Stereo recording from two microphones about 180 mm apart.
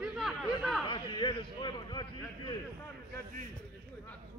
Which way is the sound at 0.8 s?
25° left (ahead or behind).